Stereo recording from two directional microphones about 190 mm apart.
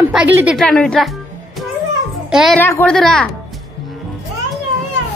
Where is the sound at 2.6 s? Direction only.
10° left (ahead or behind).